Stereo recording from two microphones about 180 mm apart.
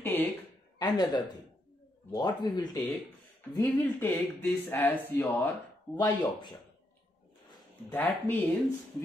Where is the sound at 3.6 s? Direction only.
10° left (ahead or behind).